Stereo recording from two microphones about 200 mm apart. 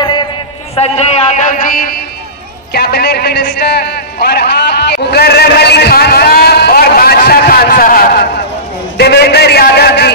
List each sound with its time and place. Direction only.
0.7 s a man's voice: 35° left (ahead or behind)
2.7 s a man's voice: 55° left (ahead or behind)